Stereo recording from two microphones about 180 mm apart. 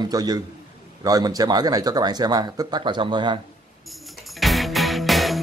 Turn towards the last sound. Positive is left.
turn(degrees=0)  # may be behind; listen again after turning